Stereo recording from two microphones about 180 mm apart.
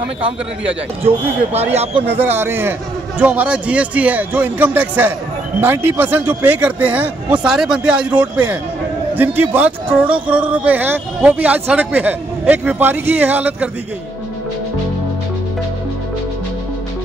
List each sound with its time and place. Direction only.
1.0 s speech: 35° right (ahead or behind)
2.0 s speech: 10° right (ahead or behind)